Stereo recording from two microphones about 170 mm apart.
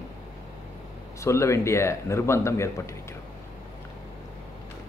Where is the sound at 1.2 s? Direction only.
15° left (ahead or behind).